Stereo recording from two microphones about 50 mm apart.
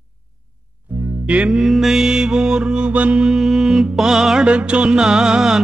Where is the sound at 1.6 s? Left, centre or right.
Centre; by 3.2 s right.